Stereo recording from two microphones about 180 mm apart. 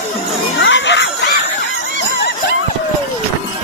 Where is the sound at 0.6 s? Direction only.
85° left.